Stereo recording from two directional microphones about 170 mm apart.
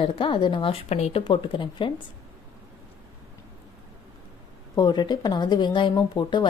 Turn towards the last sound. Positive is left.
turn(degrees=25)  # may be behind; listen again after turning